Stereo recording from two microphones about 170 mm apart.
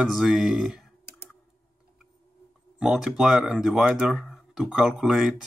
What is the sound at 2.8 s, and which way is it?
Speech, 5° right (ahead or behind).